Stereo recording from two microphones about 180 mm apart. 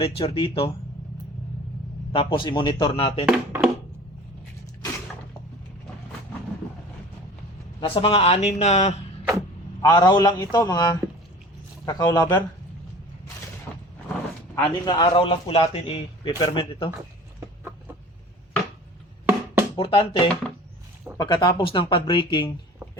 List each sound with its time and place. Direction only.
0.0 s speech: 30° left (ahead or behind)
2.1 s a man's voice: 30° left (ahead or behind)
3.2 s music: 5° right (ahead or behind)
7.8 s speech: 30° left (ahead or behind)
9.8 s a man's voice: 20° left (ahead or behind)
14.5 s a man's voice: 20° left (ahead or behind)
19.2 s music: 10° right (ahead or behind)
19.7 s a man's voice: 30° left (ahead or behind)